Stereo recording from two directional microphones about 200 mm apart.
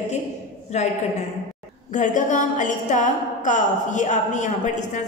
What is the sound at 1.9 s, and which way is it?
A woman's voice, 40° left (ahead or behind).